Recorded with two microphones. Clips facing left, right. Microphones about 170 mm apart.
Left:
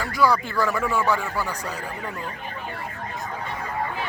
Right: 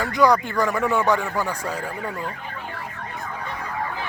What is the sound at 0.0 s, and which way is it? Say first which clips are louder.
A man's voice: right 3 dB; 20° right (ahead or behind).